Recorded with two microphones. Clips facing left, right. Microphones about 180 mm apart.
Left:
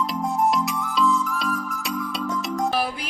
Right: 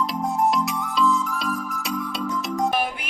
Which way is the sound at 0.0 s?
Centre (ahead or behind).